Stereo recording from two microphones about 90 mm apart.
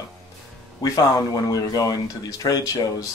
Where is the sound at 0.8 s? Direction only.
40° left (ahead or behind).